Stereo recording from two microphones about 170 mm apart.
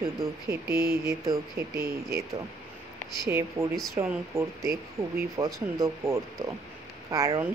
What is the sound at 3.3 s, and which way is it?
Speech, 15° right (ahead or behind).